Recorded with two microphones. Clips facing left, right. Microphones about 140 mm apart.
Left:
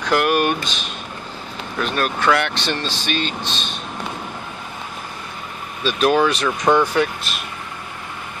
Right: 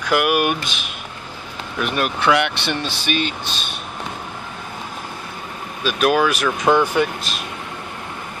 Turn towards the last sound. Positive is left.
turn(degrees=0)  # may be behind; listen again after turning